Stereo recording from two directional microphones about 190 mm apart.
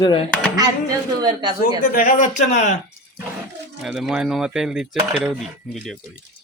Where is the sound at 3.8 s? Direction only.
Centre (ahead or behind).